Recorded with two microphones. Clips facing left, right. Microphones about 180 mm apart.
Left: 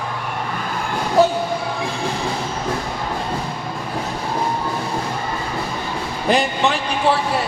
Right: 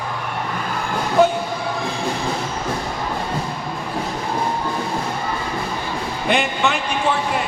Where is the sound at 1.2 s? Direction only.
35° left (ahead or behind).